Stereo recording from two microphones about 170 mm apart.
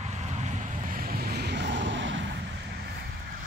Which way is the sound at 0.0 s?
40° right (ahead or behind).